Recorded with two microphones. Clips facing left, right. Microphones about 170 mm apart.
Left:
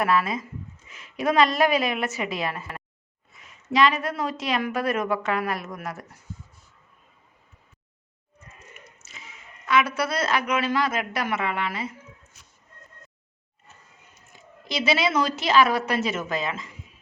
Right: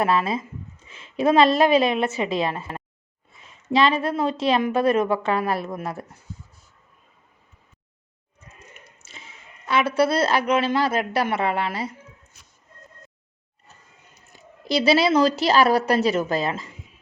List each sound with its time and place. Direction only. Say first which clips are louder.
0.0 s a woman's voice: right 2 dB; 25° right (ahead or behind)
9.0 s a woman's voice: right 1 dB; 30° right (ahead or behind)
14.7 s a woman's voice: right 6 dB; 35° right (ahead or behind)